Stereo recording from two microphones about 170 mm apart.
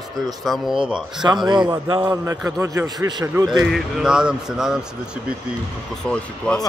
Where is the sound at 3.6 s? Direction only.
Centre (ahead or behind).